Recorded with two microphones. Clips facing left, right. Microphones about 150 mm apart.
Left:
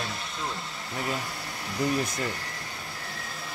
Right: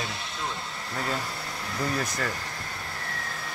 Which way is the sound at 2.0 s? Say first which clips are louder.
Even; 20° left (ahead or behind).